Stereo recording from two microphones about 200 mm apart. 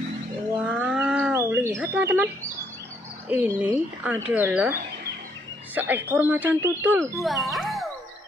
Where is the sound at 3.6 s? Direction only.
10° right (ahead or behind).